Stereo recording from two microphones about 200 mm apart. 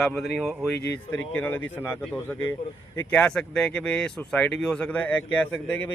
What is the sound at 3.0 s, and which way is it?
A man's voice, 5° left (ahead or behind).